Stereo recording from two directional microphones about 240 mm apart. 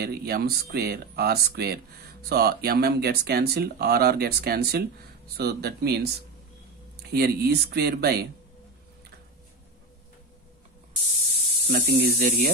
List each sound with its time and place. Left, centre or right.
0.0 s speech: right
11.6 s speech: right